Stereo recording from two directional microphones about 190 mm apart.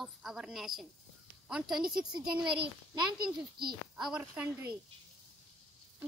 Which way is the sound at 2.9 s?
20° right (ahead or behind).